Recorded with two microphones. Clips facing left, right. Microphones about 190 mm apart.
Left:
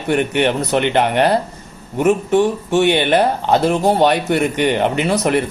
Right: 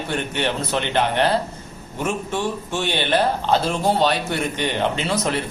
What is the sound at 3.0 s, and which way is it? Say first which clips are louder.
Speech: left 5 dB; 15° left (ahead or behind).